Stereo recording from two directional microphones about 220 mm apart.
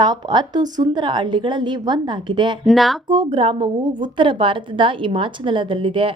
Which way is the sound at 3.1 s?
20° right (ahead or behind).